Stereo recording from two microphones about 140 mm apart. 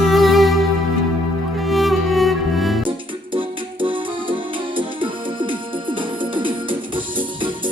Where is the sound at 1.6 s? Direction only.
Centre (ahead or behind).